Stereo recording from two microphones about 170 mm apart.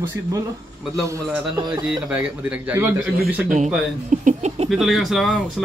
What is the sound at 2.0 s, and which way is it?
Speech, 5° right (ahead or behind).